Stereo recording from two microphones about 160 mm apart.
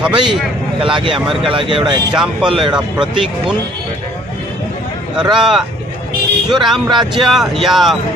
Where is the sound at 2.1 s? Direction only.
5° right (ahead or behind).